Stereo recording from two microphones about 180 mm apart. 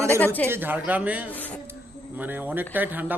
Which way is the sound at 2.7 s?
10° right (ahead or behind).